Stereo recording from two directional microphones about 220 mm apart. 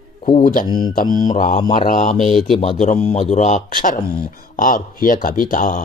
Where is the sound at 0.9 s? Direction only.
35° left (ahead or behind).